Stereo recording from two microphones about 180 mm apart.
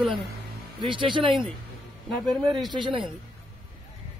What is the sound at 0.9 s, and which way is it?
Speech, 25° right (ahead or behind).